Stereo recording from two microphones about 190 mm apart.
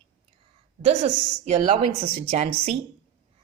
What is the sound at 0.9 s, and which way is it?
A woman's voice, 35° right (ahead or behind).